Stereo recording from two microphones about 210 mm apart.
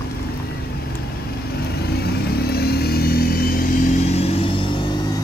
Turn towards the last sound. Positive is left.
turn(degrees=25)  # may be behind; listen again after turning